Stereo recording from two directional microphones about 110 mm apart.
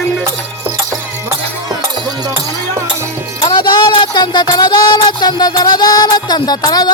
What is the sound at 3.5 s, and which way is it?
Speech, 40° left (ahead or behind).